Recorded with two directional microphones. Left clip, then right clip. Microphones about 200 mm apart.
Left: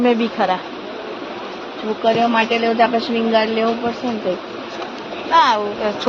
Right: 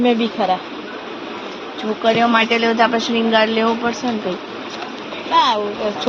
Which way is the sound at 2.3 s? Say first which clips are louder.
Right 1 dB; 30° right (ahead or behind).